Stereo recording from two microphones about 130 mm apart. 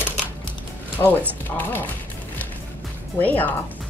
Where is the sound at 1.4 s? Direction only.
15° left (ahead or behind).